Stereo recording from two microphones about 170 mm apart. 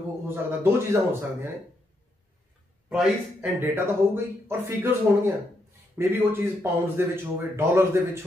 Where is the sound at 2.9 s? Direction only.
5° right (ahead or behind).